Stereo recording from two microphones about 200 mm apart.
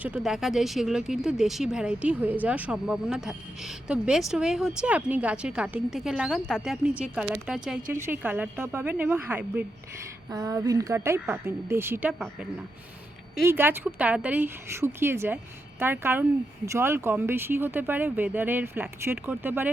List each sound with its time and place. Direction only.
0.0 s speech: 5° right (ahead or behind)
7.8 s a woman's voice: 45° right (ahead or behind)
8.0 s speech: 10° right (ahead or behind)
13.4 s speech: 10° right (ahead or behind)